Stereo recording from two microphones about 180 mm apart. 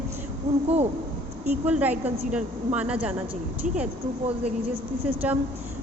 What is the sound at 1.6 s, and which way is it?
A woman's voice, 10° right (ahead or behind).